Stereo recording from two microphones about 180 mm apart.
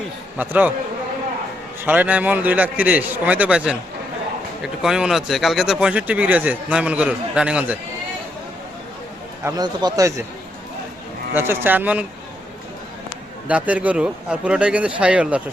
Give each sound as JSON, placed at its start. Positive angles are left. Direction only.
{"t": 0.3, "sound": "a man's voice", "side_deg": -10}
{"t": 1.8, "sound": "a man's voice", "side_deg": -10}
{"t": 9.4, "sound": "a man's voice", "side_deg": -20}
{"t": 11.3, "sound": "a man's voice", "side_deg": -10}
{"t": 13.5, "sound": "a man's voice", "side_deg": -10}